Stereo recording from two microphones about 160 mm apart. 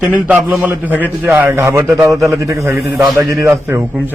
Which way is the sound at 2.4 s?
20° right (ahead or behind).